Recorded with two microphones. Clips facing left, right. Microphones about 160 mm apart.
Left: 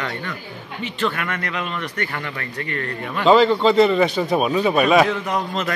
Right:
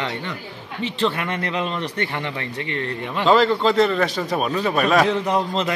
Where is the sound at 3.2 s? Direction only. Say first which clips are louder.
Left 2 dB; centre (ahead or behind).